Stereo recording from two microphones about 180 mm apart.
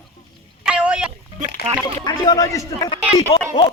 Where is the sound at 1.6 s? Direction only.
60° left (ahead or behind).